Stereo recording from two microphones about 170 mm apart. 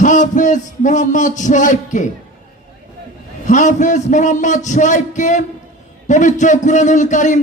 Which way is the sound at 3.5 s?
45° left (ahead or behind).